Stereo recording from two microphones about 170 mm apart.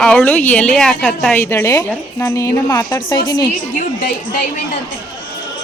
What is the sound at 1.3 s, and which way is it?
A woman's voice, 15° left (ahead or behind).